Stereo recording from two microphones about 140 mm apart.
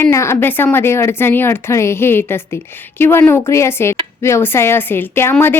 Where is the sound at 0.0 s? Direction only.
20° left (ahead or behind).